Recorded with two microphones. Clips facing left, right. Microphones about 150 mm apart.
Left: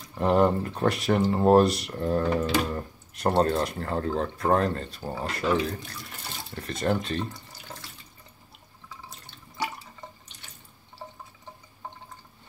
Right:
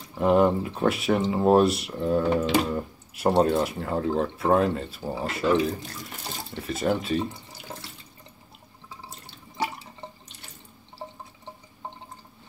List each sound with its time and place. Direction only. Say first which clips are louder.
0.1 s speech: right 2 dB; 5° right (ahead or behind)
9.2 s water: right 3 dB; 30° right (ahead or behind)